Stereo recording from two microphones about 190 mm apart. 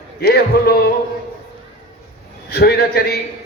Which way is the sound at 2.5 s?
55° left (ahead or behind).